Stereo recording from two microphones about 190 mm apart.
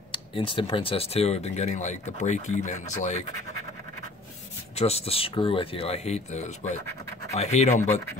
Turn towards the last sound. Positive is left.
turn(degrees=35)  # may be behind; listen again after turning